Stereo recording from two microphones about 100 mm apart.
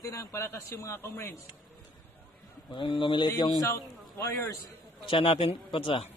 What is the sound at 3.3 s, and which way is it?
Speech, 45° left (ahead or behind).